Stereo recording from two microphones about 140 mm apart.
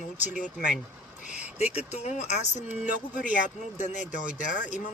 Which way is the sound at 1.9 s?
55° left (ahead or behind).